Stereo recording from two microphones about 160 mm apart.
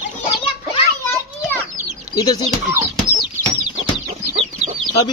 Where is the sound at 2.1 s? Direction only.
25° left (ahead or behind).